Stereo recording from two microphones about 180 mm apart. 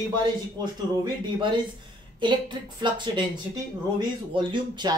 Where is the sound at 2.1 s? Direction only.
25° right (ahead or behind).